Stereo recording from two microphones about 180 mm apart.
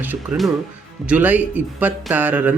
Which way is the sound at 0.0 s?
10° right (ahead or behind).